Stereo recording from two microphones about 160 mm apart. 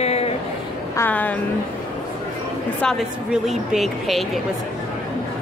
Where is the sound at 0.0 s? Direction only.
40° left (ahead or behind).